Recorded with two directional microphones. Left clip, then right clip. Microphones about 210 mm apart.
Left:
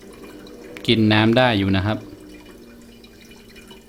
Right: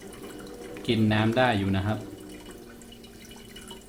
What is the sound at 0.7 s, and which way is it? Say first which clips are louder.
Speech: left 9 dB; 50° left (ahead or behind).